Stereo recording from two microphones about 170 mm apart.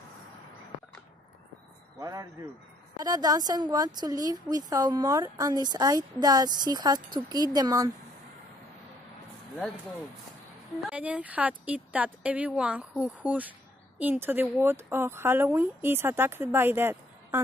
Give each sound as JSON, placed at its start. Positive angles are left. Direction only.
{"t": 2.0, "sound": "a man's voice", "side_deg": -20}
{"t": 10.9, "sound": "speech", "side_deg": -10}